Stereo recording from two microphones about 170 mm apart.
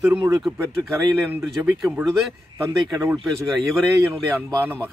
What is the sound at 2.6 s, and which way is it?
Speech, 20° right (ahead or behind).